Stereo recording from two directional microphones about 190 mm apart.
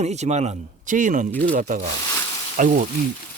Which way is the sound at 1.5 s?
45° right (ahead or behind).